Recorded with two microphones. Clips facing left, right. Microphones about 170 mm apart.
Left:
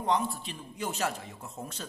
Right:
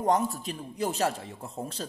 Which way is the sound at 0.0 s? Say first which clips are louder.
Right 4 dB; 45° right (ahead or behind).